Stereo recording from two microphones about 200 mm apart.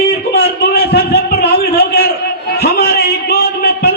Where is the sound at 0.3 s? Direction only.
55° left (ahead or behind).